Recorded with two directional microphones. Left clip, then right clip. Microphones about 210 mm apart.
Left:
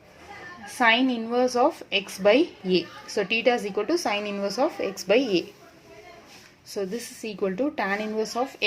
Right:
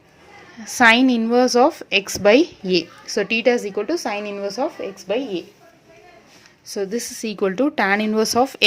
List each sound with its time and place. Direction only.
0.6 s a woman's voice: 30° right (ahead or behind); by 4.7 s 10° right (ahead or behind)
4.8 s speech: centre (ahead or behind)
6.7 s speech: 25° right (ahead or behind)